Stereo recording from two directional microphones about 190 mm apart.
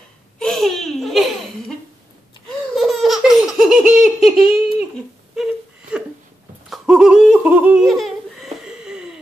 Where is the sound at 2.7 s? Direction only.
Centre (ahead or behind).